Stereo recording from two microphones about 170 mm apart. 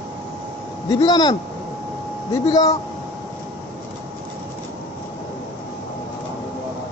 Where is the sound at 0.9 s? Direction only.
25° left (ahead or behind).